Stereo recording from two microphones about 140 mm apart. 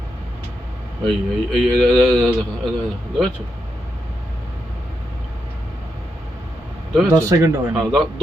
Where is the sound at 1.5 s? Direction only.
5° left (ahead or behind).